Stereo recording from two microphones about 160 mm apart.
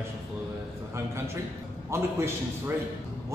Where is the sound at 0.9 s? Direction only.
15° right (ahead or behind).